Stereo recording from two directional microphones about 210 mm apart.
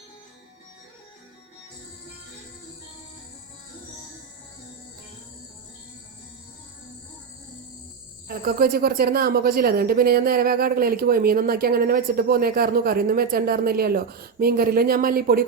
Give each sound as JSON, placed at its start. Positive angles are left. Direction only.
{"t": 8.3, "sound": "speech", "side_deg": -45}